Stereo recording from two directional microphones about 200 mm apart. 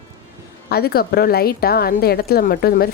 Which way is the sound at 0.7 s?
50° left (ahead or behind).